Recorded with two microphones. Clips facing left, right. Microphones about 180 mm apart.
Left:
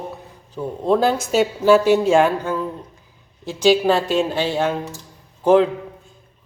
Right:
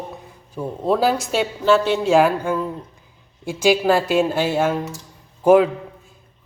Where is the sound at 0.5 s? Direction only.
5° right (ahead or behind).